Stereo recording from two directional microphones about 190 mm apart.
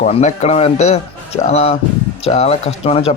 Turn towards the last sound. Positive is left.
turn(degrees=30)  # may be behind; listen again after turning